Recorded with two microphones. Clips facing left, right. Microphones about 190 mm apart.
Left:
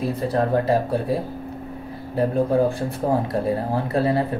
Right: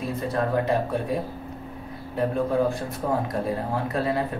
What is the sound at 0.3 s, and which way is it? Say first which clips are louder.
Speech: left 3 dB; 35° left (ahead or behind).